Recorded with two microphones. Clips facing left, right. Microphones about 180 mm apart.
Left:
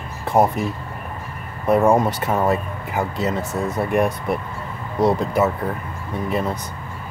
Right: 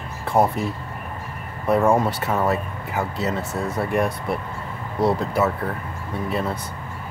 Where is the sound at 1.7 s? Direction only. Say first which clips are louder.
Left 2 dB; 20° left (ahead or behind).